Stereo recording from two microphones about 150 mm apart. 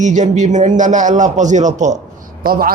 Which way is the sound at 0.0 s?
55° right (ahead or behind).